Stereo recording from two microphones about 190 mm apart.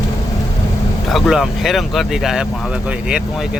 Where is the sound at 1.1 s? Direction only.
Centre (ahead or behind).